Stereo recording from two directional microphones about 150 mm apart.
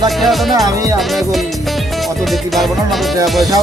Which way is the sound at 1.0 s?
Centre (ahead or behind).